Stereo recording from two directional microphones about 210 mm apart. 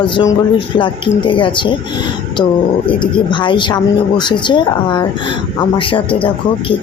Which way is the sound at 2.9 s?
25° left (ahead or behind).